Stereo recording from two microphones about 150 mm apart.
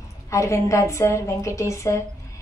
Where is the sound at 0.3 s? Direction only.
20° left (ahead or behind).